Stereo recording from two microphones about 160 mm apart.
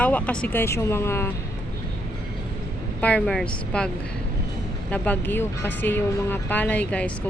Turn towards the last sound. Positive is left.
turn(degrees=10)  # may be behind; listen again after turning